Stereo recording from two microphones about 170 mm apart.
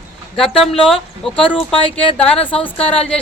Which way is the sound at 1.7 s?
30° left (ahead or behind).